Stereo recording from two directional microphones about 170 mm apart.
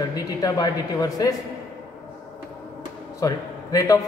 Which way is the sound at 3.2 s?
20° left (ahead or behind).